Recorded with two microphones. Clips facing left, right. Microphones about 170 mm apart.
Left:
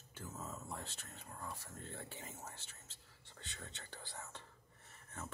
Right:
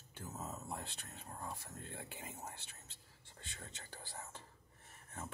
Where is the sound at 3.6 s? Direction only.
40° right (ahead or behind).